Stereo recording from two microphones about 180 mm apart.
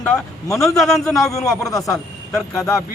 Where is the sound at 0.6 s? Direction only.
Centre (ahead or behind).